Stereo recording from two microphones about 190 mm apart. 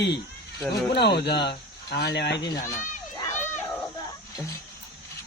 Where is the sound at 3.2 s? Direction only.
10° left (ahead or behind).